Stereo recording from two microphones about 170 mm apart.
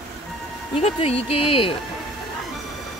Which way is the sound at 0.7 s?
35° left (ahead or behind).